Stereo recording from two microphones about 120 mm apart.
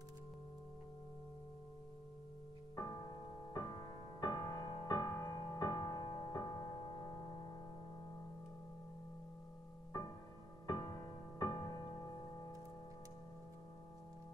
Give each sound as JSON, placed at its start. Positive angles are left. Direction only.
{"t": 2.7, "sound": "music", "side_deg": 30}
{"t": 11.3, "sound": "music", "side_deg": 35}